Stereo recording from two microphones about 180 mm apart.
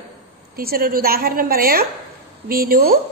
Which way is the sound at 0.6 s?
55° right (ahead or behind).